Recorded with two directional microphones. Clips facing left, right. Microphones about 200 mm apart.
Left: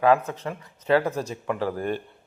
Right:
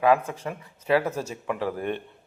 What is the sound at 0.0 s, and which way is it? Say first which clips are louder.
A man's voice: left 1 dB; 10° right (ahead or behind).